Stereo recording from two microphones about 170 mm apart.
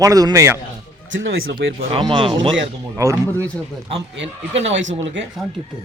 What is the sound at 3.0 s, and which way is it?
Speech, 20° right (ahead or behind).